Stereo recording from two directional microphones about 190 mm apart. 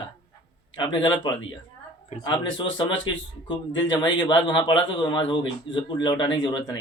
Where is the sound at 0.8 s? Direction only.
25° left (ahead or behind).